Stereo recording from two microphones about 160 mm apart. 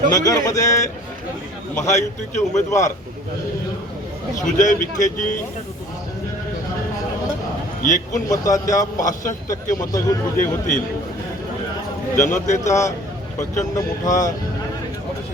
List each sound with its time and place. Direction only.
0.1 s speech: 20° left (ahead or behind)
1.9 s a man's voice: 50° left (ahead or behind)
4.4 s a man's voice: 55° left (ahead or behind)
7.8 s a man's voice: 55° left (ahead or behind)
8.3 s speech: 20° left (ahead or behind)
8.7 s a man's voice: 55° left (ahead or behind)
9.8 s speech: 20° left (ahead or behind)
10.3 s a man's voice: 55° left (ahead or behind)
12.1 s a man's voice: 50° left (ahead or behind)
12.6 s speech: 20° left (ahead or behind)